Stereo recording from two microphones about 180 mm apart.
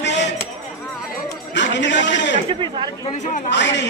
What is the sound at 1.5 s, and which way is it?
Speech, 80° left.